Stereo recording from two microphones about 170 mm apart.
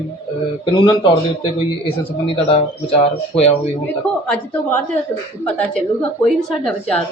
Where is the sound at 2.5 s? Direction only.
35° left (ahead or behind).